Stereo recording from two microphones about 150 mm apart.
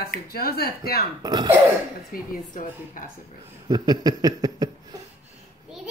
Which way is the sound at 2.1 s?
65° left (ahead or behind).